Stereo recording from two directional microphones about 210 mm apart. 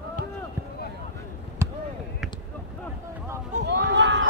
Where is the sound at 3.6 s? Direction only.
55° right (ahead or behind).